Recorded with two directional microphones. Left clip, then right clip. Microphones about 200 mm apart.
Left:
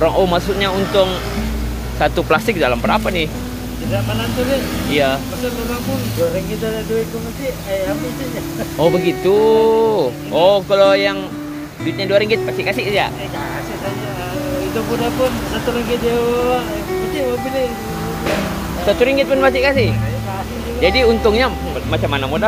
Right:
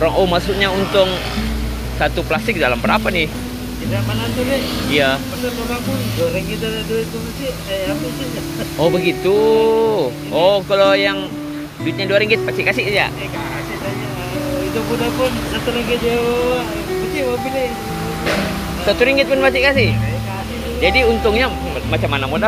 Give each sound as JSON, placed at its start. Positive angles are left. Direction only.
{"t": 0.0, "sound": "speech", "side_deg": 5}
{"t": 2.1, "sound": "speech", "side_deg": 25}
{"t": 2.6, "sound": "speech", "side_deg": 10}
{"t": 4.9, "sound": "speech", "side_deg": 5}
{"t": 8.7, "sound": "speech", "side_deg": 10}
{"t": 18.9, "sound": "speech", "side_deg": 10}